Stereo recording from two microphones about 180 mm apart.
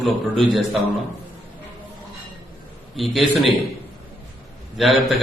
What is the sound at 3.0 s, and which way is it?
Speech, centre (ahead or behind).